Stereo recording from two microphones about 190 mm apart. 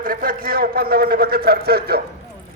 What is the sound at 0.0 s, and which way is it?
A man's voice, 50° right (ahead or behind).